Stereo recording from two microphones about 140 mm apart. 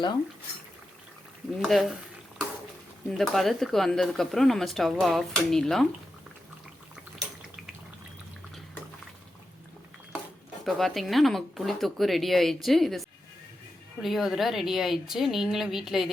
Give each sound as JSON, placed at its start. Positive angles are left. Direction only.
{"t": 1.5, "sound": "speech", "side_deg": 0}
{"t": 3.1, "sound": "speech", "side_deg": 0}
{"t": 10.7, "sound": "speech", "side_deg": 0}